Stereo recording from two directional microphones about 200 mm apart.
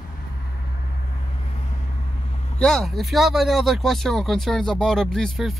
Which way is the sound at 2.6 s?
Centre (ahead or behind).